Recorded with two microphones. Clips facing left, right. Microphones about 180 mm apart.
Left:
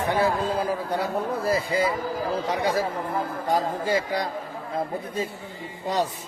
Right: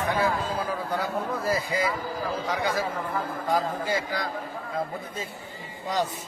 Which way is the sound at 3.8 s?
30° left (ahead or behind).